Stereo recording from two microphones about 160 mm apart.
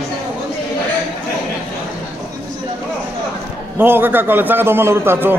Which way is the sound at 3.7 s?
15° right (ahead or behind).